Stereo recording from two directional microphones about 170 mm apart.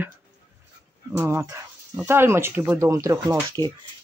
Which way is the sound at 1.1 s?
15° right (ahead or behind).